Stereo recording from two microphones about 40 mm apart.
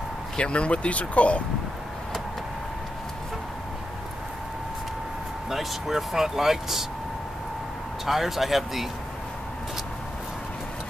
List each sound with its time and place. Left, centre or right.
0.4 s speech: left
5.5 s speech: centre
8.0 s speech: centre